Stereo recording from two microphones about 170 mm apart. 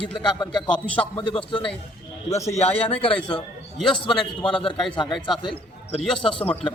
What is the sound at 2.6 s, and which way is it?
Speech, 35° left (ahead or behind).